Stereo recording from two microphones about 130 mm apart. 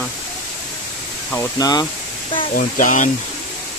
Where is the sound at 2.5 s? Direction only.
90° left.